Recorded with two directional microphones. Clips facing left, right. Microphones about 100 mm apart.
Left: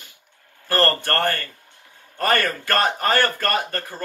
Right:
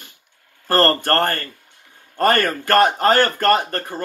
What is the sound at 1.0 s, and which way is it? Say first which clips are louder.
A man's voice: right 3 dB; 45° right (ahead or behind).